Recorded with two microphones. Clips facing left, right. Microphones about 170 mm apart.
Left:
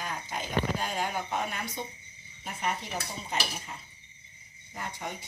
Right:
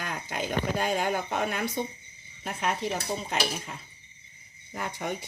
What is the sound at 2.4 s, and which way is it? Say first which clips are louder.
Speech: right 3 dB; 90° right.